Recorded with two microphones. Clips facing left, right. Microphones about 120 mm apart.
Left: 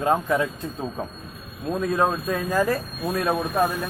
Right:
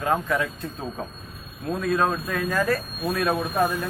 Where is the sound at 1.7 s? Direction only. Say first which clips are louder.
Left 1 dB; 15° left (ahead or behind).